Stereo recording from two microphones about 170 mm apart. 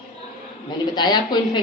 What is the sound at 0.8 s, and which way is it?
Speech, 25° left (ahead or behind).